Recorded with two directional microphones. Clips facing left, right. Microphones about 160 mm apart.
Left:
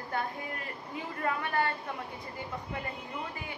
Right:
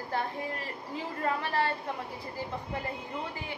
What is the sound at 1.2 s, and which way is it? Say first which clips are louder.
Speech: right 1 dB; 30° right (ahead or behind).